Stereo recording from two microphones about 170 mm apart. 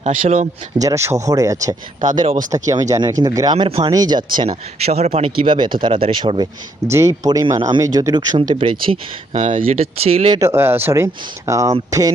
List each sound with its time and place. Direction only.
0.0 s speech: 35° right (ahead or behind)
0.8 s speech: 20° right (ahead or behind)
6.9 s speech: 20° right (ahead or behind)
9.3 s speech: 50° right (ahead or behind)
10.0 s speech: 35° right (ahead or behind)
10.4 s speech: 15° right (ahead or behind)